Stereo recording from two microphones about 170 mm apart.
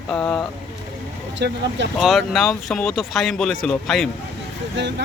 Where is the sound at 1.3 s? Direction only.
90° right.